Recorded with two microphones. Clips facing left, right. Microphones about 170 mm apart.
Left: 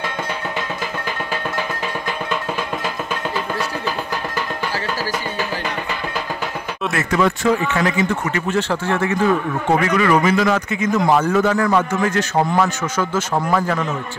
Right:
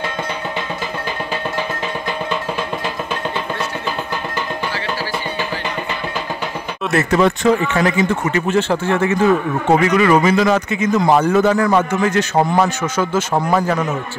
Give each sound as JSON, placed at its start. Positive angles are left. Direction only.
{"t": 6.9, "sound": "speech", "side_deg": -35}